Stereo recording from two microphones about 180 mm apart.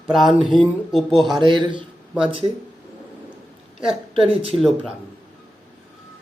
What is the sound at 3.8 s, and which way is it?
Speech, centre (ahead or behind).